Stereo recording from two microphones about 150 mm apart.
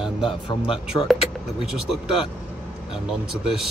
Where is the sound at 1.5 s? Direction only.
5° right (ahead or behind).